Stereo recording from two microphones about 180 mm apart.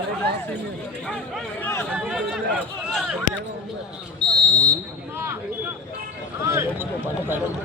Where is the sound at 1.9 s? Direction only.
5° right (ahead or behind).